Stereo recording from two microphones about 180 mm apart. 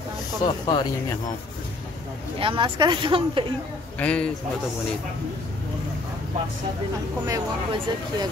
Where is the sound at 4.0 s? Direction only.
5° left (ahead or behind).